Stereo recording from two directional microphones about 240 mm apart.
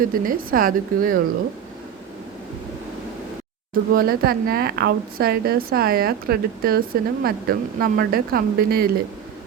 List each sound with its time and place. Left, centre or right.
0.0 s a woman's voice: right
3.9 s a woman's voice: right